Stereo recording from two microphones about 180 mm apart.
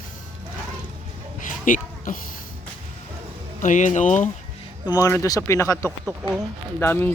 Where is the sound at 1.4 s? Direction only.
50° left (ahead or behind).